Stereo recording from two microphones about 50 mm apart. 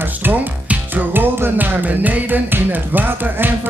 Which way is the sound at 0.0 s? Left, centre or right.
Right.